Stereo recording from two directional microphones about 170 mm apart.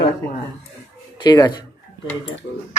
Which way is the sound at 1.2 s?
25° left (ahead or behind).